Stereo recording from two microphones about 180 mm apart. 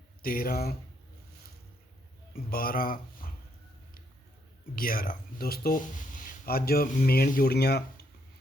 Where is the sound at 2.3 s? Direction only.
55° left (ahead or behind).